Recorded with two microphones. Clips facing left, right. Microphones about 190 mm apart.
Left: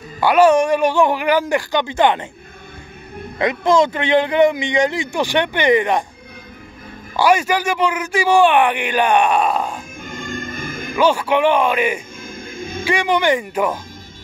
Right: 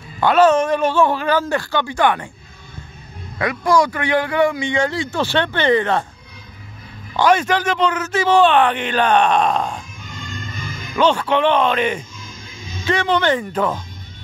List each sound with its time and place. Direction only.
0.2 s a man's voice: 10° left (ahead or behind)
3.3 s a man's voice: 20° left (ahead or behind)
7.2 s a man's voice: 10° left (ahead or behind)
10.0 s music: 50° left (ahead or behind)
11.0 s a man's voice: 10° left (ahead or behind)
12.2 s music: 55° left (ahead or behind)
12.8 s a man's voice: 10° left (ahead or behind)